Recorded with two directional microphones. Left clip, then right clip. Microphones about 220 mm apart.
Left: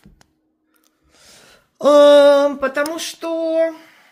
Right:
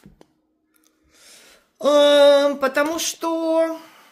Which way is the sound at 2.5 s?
Centre (ahead or behind).